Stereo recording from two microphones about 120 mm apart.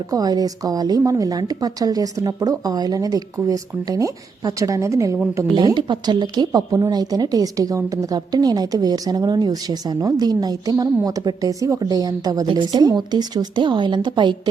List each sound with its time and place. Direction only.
0.1 s speech: 30° right (ahead or behind)
5.5 s speech: 40° right (ahead or behind)